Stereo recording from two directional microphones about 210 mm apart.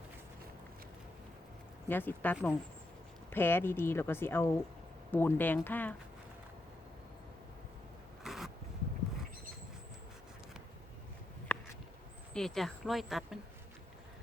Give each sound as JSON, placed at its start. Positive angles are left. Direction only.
{"t": 1.9, "sound": "speech", "side_deg": 10}
{"t": 8.2, "sound": "zipper", "side_deg": 0}
{"t": 11.5, "sound": "a sound", "side_deg": 10}
{"t": 12.3, "sound": "speech", "side_deg": 0}